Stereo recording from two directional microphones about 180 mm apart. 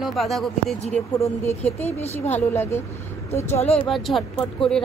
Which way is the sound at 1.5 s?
35° left (ahead or behind).